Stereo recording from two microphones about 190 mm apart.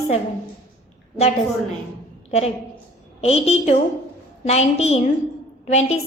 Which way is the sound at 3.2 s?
35° left (ahead or behind).